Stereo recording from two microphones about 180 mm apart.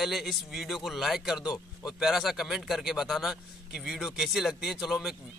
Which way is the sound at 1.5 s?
20° left (ahead or behind).